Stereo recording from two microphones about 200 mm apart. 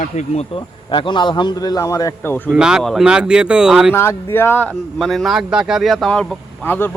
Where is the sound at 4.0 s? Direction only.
10° left (ahead or behind).